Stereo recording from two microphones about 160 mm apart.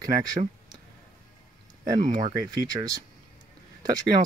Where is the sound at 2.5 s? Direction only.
25° right (ahead or behind).